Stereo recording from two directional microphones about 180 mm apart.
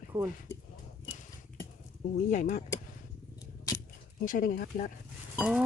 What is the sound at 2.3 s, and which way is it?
Speech, 45° left (ahead or behind).